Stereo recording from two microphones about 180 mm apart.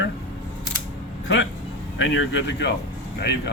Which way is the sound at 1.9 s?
90° left.